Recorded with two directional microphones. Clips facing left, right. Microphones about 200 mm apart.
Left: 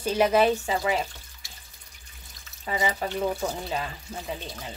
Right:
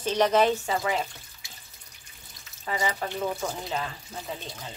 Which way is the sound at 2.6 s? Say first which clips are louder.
Left 2 dB; 20° left (ahead or behind).